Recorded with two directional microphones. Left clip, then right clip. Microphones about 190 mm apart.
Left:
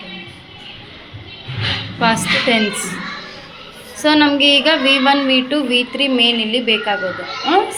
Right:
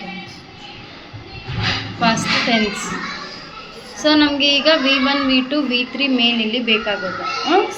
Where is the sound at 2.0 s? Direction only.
25° left (ahead or behind).